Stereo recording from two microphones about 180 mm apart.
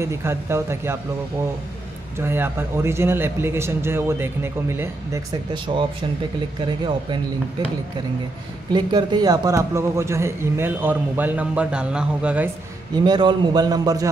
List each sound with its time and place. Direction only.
0.0 s a man's voice: 15° right (ahead or behind)
2.1 s a man's voice: 15° right (ahead or behind)
5.5 s a man's voice: 30° right (ahead or behind)
8.7 s a man's voice: 20° right (ahead or behind); by 12.4 s 5° right (ahead or behind)
12.9 s a man's voice: 25° right (ahead or behind)